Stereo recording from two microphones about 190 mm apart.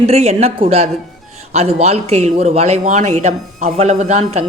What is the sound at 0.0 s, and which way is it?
Speech, 35° right (ahead or behind).